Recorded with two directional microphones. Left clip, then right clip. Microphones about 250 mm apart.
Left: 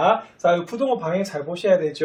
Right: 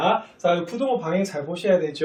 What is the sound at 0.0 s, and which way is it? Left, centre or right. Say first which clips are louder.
Speech: left 3 dB; centre.